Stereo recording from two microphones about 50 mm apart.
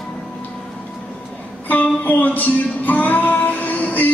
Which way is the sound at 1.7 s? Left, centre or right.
Left.